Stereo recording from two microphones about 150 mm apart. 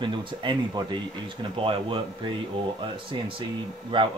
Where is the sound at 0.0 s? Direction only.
30° right (ahead or behind).